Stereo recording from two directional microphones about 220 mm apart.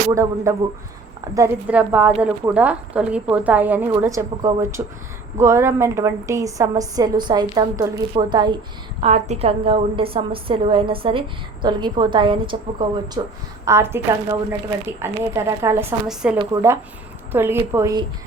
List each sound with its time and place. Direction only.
0.1 s a woman's voice: 15° right (ahead or behind)